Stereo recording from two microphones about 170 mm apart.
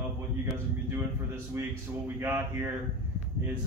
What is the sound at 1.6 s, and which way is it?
Speech, 15° right (ahead or behind).